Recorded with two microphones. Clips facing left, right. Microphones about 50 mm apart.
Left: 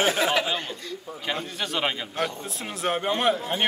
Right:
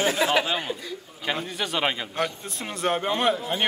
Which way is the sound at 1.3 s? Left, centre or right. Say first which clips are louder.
Right 2 dB; centre.